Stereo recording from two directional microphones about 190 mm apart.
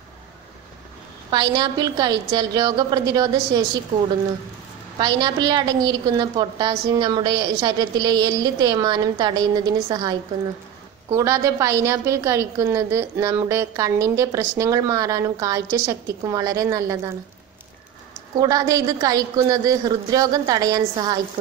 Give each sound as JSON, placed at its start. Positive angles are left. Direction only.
{"t": 1.3, "sound": "a woman's voice", "side_deg": -25}
{"t": 4.9, "sound": "a woman's voice", "side_deg": -25}
{"t": 18.4, "sound": "a woman's voice", "side_deg": -20}